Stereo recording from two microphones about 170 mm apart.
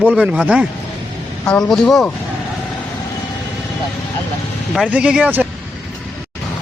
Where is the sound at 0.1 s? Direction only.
10° right (ahead or behind).